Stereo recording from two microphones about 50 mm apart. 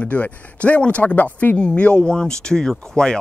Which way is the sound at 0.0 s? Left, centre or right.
Left.